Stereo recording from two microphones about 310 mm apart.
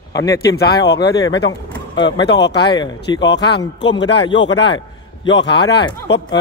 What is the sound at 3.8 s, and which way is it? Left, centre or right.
Speech, left.